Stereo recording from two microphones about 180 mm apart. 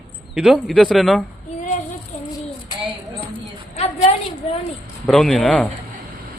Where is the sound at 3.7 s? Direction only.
35° left (ahead or behind).